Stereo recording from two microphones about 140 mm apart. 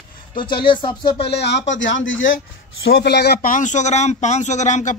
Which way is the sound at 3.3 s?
80° left.